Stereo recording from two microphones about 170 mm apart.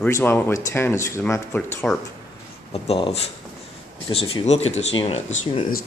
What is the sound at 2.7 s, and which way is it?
Speech, 35° left (ahead or behind).